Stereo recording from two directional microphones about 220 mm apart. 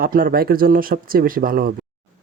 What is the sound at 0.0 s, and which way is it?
Mantra, 40° right (ahead or behind).